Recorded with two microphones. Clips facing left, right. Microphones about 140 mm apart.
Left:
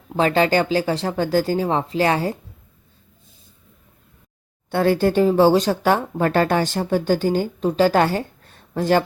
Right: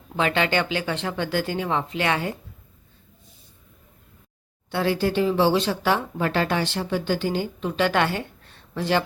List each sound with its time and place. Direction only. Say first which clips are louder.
0.2 s speech: left 5 dB; 35° left (ahead or behind)
4.7 s speech: left 5 dB; 50° left (ahead or behind)